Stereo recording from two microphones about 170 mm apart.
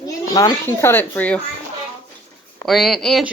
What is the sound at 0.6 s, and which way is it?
Speech, 10° left (ahead or behind).